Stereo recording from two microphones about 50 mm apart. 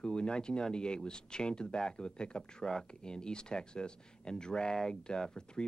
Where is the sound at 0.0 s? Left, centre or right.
Centre.